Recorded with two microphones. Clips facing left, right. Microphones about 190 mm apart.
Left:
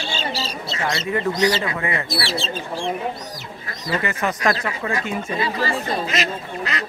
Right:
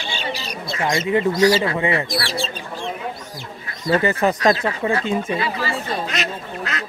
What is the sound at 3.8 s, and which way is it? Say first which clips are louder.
Speech: right 6 dB; 35° right (ahead or behind).